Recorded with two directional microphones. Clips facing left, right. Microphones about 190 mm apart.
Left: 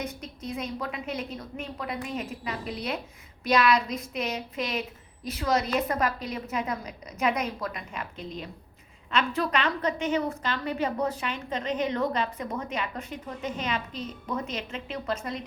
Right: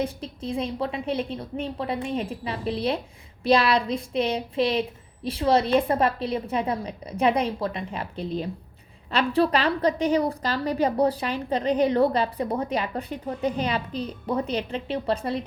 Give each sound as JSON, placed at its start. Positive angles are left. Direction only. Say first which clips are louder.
{"t": 0.0, "sound": "a woman's voice", "louder": "right 6 dB", "side_deg": -30}